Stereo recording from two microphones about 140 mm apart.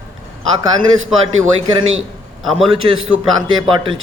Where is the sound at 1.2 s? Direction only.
40° right (ahead or behind).